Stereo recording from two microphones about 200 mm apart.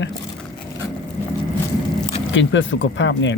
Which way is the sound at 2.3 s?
65° left (ahead or behind).